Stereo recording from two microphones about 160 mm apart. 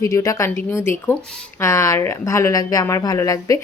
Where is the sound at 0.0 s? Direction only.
20° left (ahead or behind).